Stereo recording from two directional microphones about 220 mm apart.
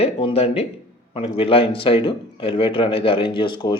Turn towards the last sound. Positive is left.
turn(degrees=20)  # may be behind; listen again after turning